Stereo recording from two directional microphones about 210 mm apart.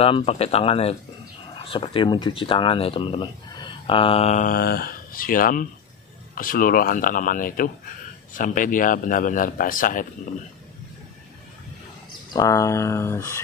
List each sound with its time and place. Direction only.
0.0 s speech: 25° left (ahead or behind)
4.6 s a man's voice: 50° left (ahead or behind)
12.3 s speech: 15° left (ahead or behind)